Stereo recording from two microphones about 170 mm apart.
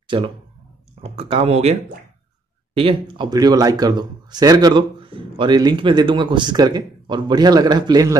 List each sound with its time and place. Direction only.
0.1 s speech: 30° right (ahead or behind)